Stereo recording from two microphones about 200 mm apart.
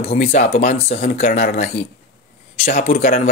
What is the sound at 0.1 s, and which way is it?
Speech, 35° left (ahead or behind).